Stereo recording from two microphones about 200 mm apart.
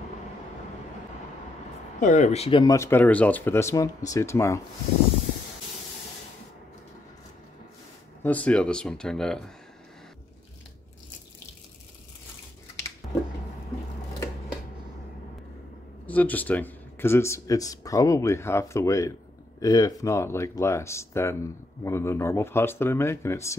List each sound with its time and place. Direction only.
2.0 s speech: 40° left (ahead or behind)
2.7 s speech: 10° left (ahead or behind)
8.2 s speech: 5° left (ahead or behind)
16.1 s speech: 10° left (ahead or behind)